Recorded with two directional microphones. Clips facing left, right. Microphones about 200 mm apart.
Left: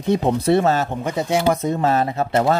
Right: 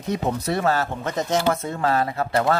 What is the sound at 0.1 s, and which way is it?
Speech, 30° left (ahead or behind).